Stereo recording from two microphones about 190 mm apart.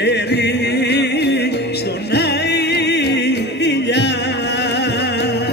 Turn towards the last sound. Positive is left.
turn(degrees=65)  # may be behind; listen again after turning